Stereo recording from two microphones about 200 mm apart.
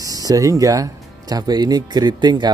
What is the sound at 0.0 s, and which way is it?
Speech, 15° right (ahead or behind).